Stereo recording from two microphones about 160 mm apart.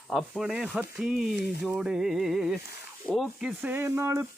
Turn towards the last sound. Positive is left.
turn(degrees=-15)  # may be behind; listen again after turning